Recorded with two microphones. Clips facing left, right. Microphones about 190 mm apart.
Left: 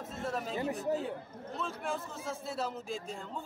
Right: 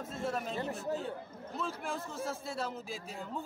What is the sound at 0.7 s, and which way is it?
Speech, 15° left (ahead or behind).